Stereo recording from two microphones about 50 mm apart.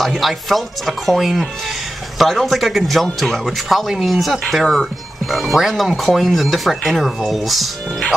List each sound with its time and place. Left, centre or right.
0.0 s speech: centre